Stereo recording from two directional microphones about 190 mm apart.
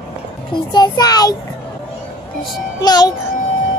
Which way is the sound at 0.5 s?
20° left (ahead or behind).